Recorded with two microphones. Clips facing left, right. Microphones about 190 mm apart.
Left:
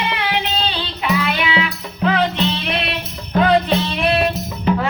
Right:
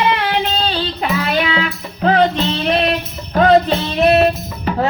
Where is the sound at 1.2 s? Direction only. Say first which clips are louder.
Right 2 dB; 40° right (ahead or behind).